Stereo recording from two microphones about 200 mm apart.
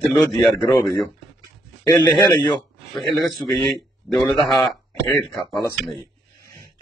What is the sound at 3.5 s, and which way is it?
Speech, 20° left (ahead or behind).